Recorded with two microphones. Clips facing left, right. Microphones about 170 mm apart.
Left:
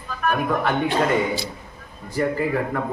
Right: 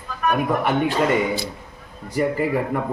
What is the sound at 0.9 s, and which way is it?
Speech, 55° right (ahead or behind).